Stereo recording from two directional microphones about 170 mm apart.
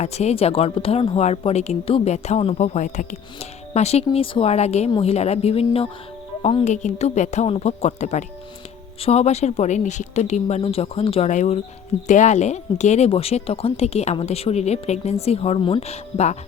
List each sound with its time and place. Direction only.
0.0 s speech: 40° left (ahead or behind)
6.7 s a woman's voice: 40° left (ahead or behind)